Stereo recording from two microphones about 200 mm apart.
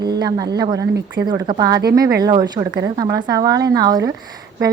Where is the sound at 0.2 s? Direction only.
20° right (ahead or behind).